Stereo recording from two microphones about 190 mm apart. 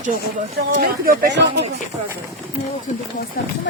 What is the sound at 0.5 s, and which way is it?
Speech, 60° right (ahead or behind).